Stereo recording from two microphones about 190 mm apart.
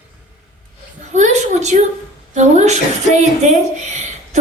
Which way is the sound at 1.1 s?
40° right (ahead or behind).